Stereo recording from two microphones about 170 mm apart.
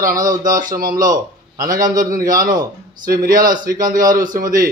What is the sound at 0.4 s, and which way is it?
Speech, 50° right (ahead or behind).